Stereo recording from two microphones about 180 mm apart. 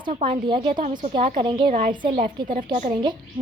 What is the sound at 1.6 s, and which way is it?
Speech, 50° right (ahead or behind).